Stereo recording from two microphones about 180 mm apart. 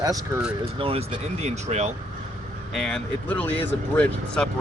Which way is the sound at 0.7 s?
30° right (ahead or behind).